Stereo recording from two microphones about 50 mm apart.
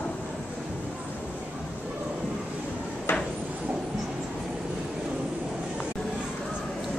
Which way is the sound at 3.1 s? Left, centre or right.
Left.